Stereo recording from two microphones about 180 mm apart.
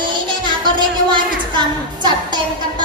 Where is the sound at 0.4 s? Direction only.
25° right (ahead or behind).